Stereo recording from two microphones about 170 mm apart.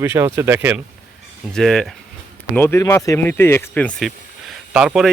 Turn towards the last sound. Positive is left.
turn(degrees=-5)  # may be behind; listen again after turning